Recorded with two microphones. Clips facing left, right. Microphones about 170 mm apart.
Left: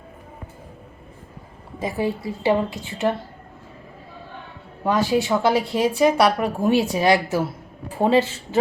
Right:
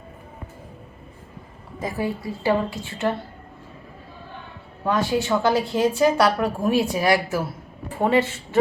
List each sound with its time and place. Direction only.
1.8 s a woman's voice: 25° left (ahead or behind)
4.8 s a woman's voice: 15° left (ahead or behind)